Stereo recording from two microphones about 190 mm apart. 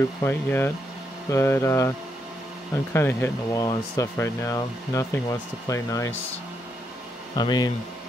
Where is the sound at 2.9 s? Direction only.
10° left (ahead or behind).